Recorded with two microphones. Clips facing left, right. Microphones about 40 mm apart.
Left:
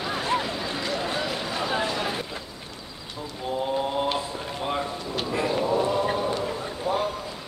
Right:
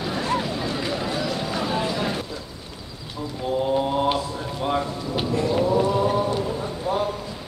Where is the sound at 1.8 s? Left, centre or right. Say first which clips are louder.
Right 2 dB; centre.